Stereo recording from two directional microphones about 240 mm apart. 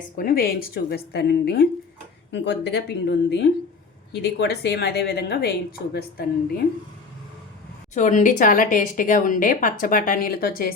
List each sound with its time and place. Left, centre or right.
0.2 s a woman's voice: left
7.9 s a woman's voice: left